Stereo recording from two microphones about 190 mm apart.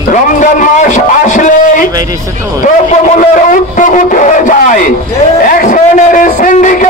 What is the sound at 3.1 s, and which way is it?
A man's voice, 40° left (ahead or behind).